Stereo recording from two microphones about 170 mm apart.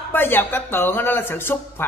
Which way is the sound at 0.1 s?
10° left (ahead or behind).